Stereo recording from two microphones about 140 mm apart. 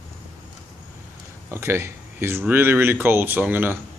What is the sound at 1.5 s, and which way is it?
Speech, 20° right (ahead or behind).